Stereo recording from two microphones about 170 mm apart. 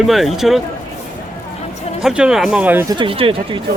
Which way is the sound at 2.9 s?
30° right (ahead or behind).